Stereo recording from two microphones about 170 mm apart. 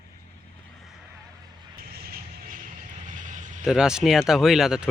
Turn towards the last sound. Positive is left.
turn(degrees=0)  # may be behind; listen again after turning